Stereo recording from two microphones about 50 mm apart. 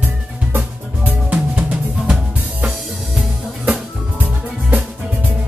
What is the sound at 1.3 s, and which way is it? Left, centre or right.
Music, right.